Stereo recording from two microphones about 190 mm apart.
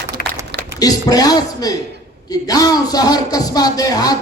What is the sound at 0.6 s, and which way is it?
Speech, 20° left (ahead or behind).